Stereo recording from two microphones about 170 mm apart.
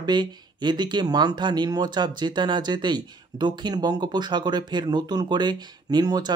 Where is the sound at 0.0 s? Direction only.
25° right (ahead or behind).